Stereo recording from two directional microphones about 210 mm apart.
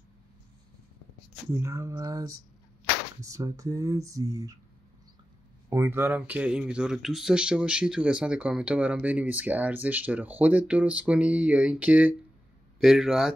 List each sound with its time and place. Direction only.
1.5 s speech: 15° right (ahead or behind)
5.7 s speech: 10° right (ahead or behind)